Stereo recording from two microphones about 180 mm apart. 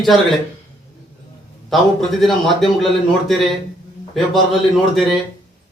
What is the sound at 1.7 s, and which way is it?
Speech, centre (ahead or behind).